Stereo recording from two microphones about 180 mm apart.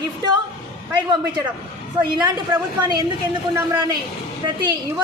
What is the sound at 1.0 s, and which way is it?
A woman's voice, 25° right (ahead or behind).